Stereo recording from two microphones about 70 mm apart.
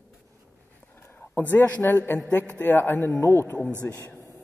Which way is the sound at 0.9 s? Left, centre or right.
Left.